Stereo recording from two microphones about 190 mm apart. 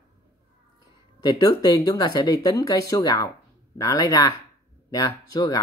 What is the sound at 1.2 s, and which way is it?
Speech, 20° left (ahead or behind).